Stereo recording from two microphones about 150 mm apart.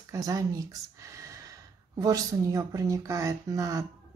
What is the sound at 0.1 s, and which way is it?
Speech, 20° right (ahead or behind).